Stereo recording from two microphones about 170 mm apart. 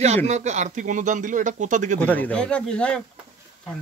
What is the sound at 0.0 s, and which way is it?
Speech, 40° right (ahead or behind).